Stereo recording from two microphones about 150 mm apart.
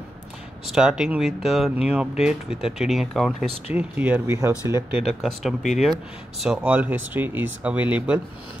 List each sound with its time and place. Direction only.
0.7 s speech: 5° right (ahead or behind)
3.7 s speech: 10° right (ahead or behind)
5.2 s speech: centre (ahead or behind)